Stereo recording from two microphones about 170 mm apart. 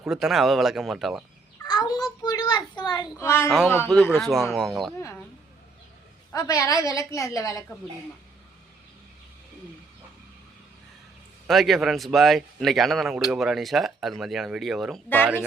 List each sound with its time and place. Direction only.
0.0 s speech: 5° right (ahead or behind)
1.6 s a child's voice: 25° left (ahead or behind)
3.8 s speech: 5° left (ahead or behind)
6.3 s a woman's voice: 20° left (ahead or behind)
11.4 s speech: centre (ahead or behind)